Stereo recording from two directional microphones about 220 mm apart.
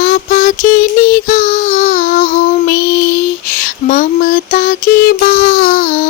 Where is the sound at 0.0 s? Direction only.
35° left (ahead or behind).